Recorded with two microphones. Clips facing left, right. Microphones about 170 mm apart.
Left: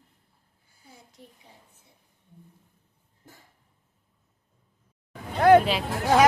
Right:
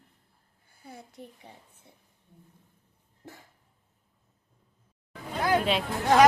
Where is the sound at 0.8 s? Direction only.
60° right (ahead or behind).